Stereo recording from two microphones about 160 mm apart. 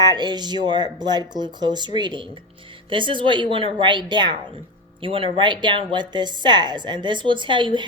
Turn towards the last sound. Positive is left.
turn(degrees=-30)  # may be behind; listen again after turning